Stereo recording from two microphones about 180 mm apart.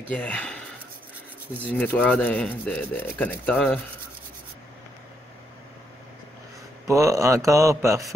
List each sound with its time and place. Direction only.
0.1 s speech: 5° left (ahead or behind)
1.6 s speech: 10° left (ahead or behind)
6.9 s speech: 15° right (ahead or behind)